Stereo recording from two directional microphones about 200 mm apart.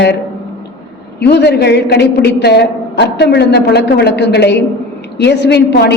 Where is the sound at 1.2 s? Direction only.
55° left (ahead or behind).